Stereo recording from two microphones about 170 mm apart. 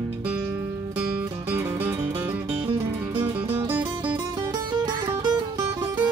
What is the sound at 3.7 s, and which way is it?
Music, 10° right (ahead or behind).